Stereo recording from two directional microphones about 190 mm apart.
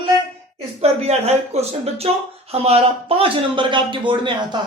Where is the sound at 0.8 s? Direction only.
35° right (ahead or behind).